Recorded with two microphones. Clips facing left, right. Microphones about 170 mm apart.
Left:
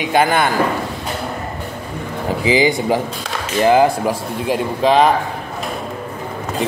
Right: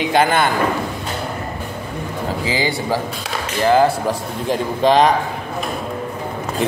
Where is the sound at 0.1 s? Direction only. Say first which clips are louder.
Left 2 dB; 15° left (ahead or behind).